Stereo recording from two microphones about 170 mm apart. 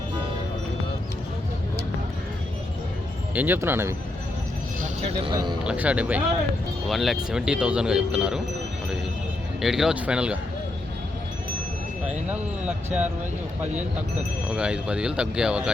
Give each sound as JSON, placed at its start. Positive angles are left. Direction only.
{"t": 3.3, "sound": "speech", "side_deg": -10}
{"t": 4.8, "sound": "a sound", "side_deg": -40}
{"t": 5.3, "sound": "speech", "side_deg": -25}
{"t": 5.6, "sound": "speech", "side_deg": -10}
{"t": 9.6, "sound": "speech", "side_deg": 0}
{"t": 12.3, "sound": "speech", "side_deg": -10}